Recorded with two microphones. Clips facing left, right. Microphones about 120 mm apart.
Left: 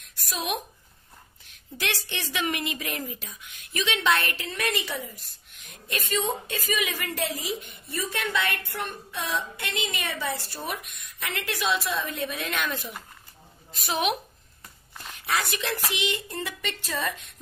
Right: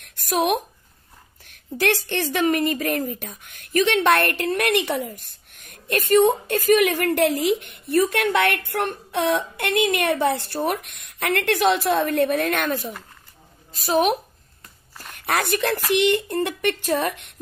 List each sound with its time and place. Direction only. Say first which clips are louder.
0.0 s a woman's voice: right 12 dB; 60° right (ahead or behind)
13.7 s a woman's voice: right 7 dB; 35° right (ahead or behind)
15.1 s a woman's voice: right 6 dB; 55° right (ahead or behind)